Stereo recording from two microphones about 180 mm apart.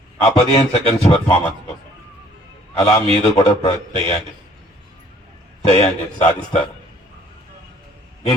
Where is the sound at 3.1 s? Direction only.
35° left (ahead or behind).